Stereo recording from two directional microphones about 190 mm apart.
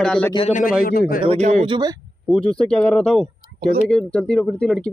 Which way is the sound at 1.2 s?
35° right (ahead or behind).